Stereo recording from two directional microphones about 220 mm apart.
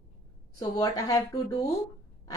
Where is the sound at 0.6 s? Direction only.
15° left (ahead or behind).